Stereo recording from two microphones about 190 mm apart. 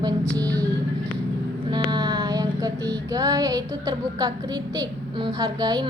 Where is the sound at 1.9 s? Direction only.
20° right (ahead or behind).